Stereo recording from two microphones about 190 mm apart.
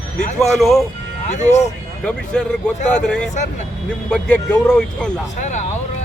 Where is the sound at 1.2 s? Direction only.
40° left (ahead or behind).